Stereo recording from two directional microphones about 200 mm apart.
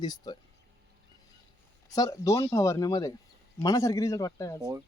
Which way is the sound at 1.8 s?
20° left (ahead or behind).